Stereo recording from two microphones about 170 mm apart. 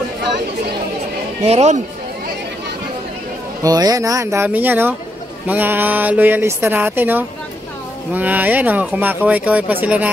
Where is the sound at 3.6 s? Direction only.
20° right (ahead or behind).